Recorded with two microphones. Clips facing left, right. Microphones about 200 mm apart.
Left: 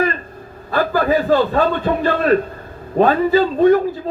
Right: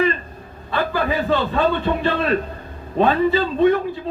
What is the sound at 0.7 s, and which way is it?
A man's voice, 45° left (ahead or behind).